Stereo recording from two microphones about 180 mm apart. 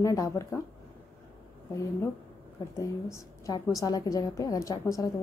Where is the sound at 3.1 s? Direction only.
20° left (ahead or behind).